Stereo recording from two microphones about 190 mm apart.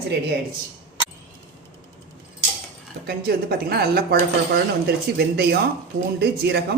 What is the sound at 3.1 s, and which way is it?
Speech, 55° right (ahead or behind).